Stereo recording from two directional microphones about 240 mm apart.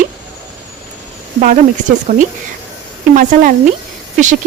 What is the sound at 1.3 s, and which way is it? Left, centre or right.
Speech, right.